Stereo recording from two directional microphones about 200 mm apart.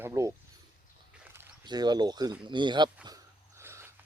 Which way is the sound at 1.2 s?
10° right (ahead or behind).